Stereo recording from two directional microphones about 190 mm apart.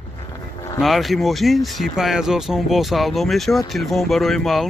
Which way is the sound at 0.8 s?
Centre (ahead or behind).